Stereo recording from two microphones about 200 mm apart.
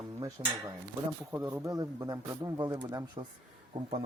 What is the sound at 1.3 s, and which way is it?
A man's voice, 15° right (ahead or behind).